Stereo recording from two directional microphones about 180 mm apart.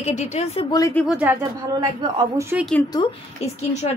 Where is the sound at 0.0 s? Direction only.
40° left (ahead or behind).